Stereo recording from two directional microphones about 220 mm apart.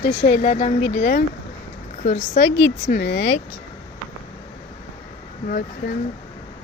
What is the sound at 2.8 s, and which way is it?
Speech, 45° left (ahead or behind).